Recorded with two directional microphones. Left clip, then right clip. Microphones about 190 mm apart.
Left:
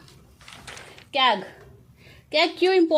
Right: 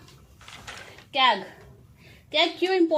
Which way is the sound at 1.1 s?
60° left (ahead or behind).